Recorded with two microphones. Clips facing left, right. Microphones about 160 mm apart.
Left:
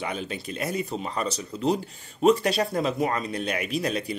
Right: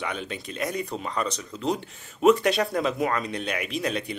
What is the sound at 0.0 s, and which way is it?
Speech, 40° left (ahead or behind).